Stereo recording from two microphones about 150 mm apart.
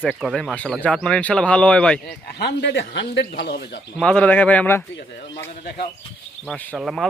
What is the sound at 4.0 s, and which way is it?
Speech, 5° left (ahead or behind).